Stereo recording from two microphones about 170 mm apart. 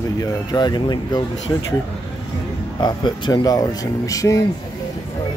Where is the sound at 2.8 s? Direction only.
25° left (ahead or behind).